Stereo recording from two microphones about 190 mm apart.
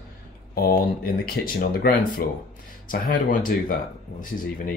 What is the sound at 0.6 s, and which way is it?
Speech, 50° left (ahead or behind).